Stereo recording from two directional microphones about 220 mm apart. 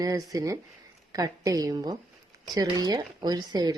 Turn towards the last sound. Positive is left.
turn(degrees=-15)  # may be behind; listen again after turning